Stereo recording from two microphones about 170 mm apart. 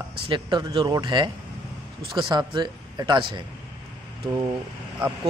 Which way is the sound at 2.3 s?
25° right (ahead or behind).